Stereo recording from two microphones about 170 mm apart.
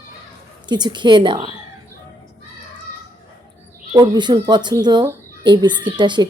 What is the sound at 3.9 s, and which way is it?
Speech, 25° right (ahead or behind).